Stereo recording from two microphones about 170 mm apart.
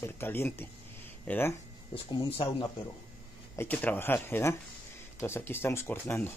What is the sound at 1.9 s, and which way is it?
Speech, 25° left (ahead or behind).